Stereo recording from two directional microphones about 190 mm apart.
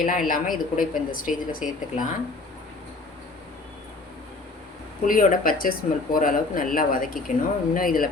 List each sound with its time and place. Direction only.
0.0 s speech: 45° left (ahead or behind)
5.0 s speech: 45° left (ahead or behind)